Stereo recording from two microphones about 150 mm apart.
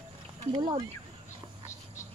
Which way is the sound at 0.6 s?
30° right (ahead or behind).